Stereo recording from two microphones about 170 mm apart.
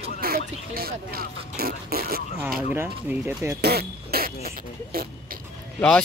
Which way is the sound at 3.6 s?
65° right (ahead or behind).